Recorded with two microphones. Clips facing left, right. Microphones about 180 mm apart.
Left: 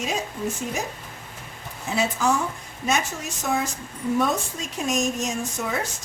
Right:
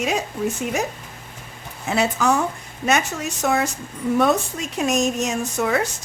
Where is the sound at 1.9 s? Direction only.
70° right (ahead or behind).